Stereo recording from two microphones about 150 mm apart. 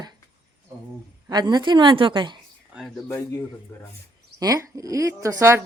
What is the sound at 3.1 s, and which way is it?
Speech, 20° left (ahead or behind).